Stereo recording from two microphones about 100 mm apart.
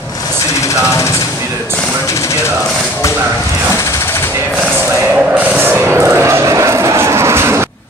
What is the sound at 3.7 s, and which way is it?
Jackhammer, 30° left (ahead or behind).